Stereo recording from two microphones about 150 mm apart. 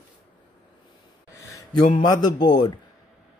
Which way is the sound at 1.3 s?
20° left (ahead or behind).